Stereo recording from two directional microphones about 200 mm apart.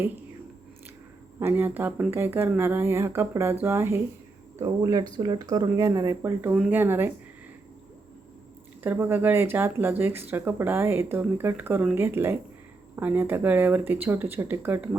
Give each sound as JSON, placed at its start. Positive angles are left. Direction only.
{"t": 1.4, "sound": "speech", "side_deg": -10}
{"t": 8.8, "sound": "speech", "side_deg": -10}